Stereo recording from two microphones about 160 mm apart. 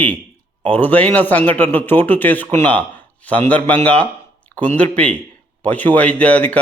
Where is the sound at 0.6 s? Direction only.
10° left (ahead or behind).